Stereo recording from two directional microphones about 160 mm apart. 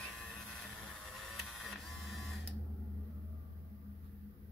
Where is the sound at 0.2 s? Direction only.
5° left (ahead or behind).